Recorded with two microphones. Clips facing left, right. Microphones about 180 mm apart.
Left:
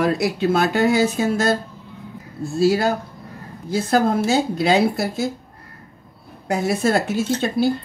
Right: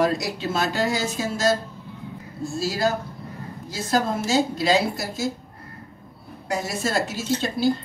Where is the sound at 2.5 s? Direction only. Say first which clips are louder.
Left 7 dB; 60° left (ahead or behind).